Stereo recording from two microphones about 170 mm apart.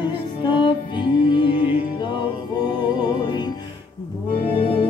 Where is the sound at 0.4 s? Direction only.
30° left (ahead or behind).